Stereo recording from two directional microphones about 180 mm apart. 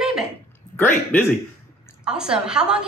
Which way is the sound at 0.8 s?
10° left (ahead or behind).